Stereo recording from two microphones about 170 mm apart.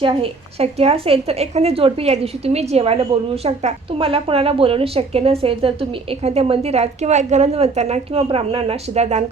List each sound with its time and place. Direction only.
0.0 s a woman's voice: 30° right (ahead or behind)